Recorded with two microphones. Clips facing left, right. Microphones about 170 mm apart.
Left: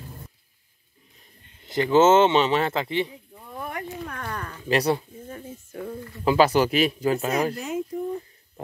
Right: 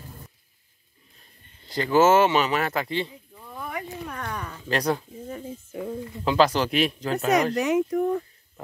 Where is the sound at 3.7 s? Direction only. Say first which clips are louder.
Even; 5° right (ahead or behind).